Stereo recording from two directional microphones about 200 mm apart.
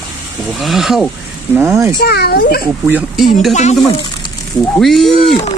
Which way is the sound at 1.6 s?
15° right (ahead or behind).